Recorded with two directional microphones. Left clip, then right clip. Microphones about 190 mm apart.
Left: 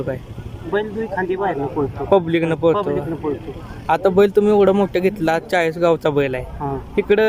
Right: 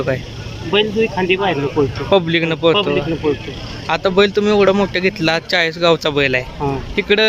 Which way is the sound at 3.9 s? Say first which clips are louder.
Even; 15° left (ahead or behind).